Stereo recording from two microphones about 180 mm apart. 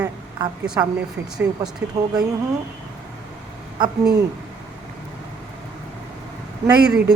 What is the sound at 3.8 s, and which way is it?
Speech, 25° right (ahead or behind).